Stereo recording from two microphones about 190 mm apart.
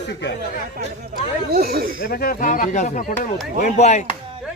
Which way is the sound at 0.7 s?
55° right (ahead or behind).